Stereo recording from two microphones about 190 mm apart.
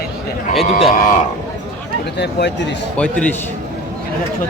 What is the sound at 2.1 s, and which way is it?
Speech, 60° left (ahead or behind).